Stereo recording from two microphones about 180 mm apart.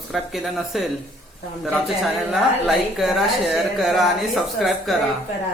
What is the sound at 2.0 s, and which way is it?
Speech, centre (ahead or behind).